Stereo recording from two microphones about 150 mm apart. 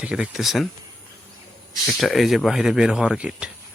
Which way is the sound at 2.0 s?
Centre (ahead or behind).